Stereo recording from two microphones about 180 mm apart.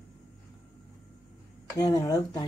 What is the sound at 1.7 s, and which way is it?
Speech, 20° left (ahead or behind).